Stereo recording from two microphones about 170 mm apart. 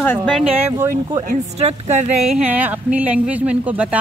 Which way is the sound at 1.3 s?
40° right (ahead or behind).